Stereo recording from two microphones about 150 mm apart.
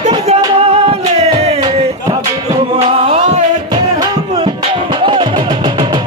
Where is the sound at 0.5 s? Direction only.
45° right (ahead or behind).